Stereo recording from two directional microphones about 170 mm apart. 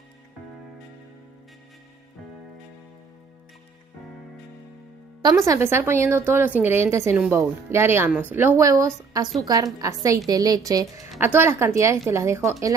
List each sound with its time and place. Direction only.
5.2 s a woman's voice: 20° right (ahead or behind)